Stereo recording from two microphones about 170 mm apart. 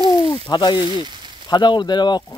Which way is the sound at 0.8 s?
25° right (ahead or behind).